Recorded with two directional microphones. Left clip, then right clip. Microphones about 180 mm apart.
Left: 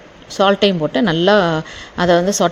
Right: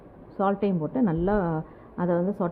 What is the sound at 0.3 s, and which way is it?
A woman's voice, 25° left (ahead or behind).